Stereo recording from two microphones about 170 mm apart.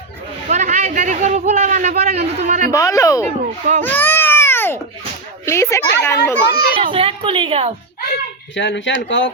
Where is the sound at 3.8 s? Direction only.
10° left (ahead or behind).